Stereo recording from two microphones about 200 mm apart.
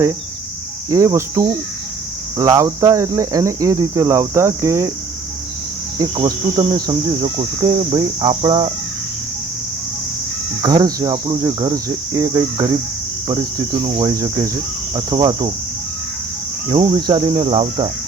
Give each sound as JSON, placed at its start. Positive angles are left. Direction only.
{"t": 0.9, "sound": "speech", "side_deg": -15}
{"t": 6.0, "sound": "cricket", "side_deg": -20}
{"t": 10.6, "sound": "cricket", "side_deg": -20}
{"t": 13.8, "sound": "cricket", "side_deg": -25}
{"t": 14.1, "sound": "speech", "side_deg": -15}
{"t": 14.9, "sound": "cricket", "side_deg": -20}
{"t": 16.6, "sound": "cricket", "side_deg": -25}